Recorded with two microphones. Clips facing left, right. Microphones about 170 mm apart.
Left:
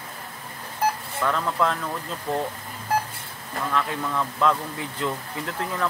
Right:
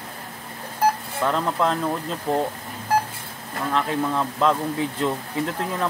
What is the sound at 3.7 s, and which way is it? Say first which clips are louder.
Speech: right 4 dB; 25° right (ahead or behind).